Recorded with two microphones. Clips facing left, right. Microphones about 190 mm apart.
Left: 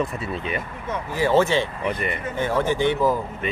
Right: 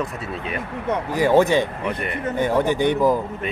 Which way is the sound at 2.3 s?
15° right (ahead or behind).